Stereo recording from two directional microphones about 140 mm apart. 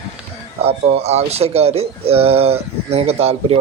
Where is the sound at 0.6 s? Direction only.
45° right (ahead or behind).